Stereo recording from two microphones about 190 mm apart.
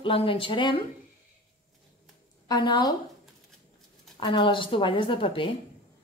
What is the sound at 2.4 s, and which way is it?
Speech, 25° left (ahead or behind).